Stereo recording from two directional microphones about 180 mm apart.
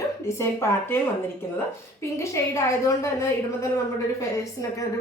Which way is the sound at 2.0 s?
15° left (ahead or behind).